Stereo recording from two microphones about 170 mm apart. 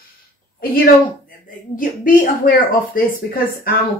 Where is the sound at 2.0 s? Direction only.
55° left (ahead or behind).